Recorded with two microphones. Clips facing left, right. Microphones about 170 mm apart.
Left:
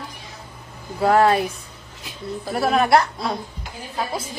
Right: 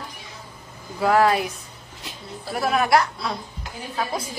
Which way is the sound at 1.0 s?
30° left (ahead or behind).